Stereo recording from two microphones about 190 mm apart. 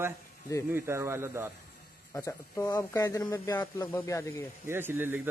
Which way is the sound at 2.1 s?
20° left (ahead or behind).